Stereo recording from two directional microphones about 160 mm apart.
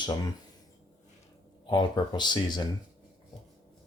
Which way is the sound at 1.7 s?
25° left (ahead or behind).